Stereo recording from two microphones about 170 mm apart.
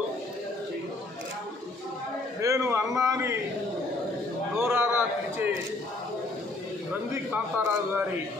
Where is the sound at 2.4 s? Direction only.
20° right (ahead or behind).